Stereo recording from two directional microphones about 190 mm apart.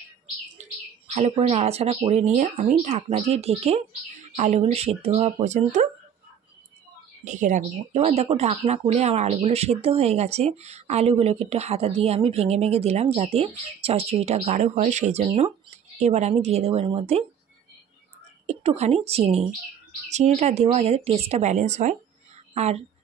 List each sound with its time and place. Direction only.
0.6 s bird: 35° right (ahead or behind)
1.5 s speech: 35° right (ahead or behind)
7.2 s speech: 40° right (ahead or behind)
18.5 s a woman's voice: 35° right (ahead or behind)